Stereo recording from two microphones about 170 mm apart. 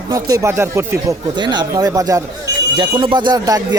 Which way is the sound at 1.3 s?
25° right (ahead or behind).